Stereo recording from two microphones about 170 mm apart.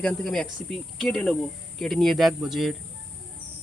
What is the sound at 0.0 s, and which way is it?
Speech, 5° left (ahead or behind).